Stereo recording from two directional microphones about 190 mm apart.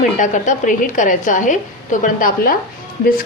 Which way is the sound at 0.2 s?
40° left (ahead or behind).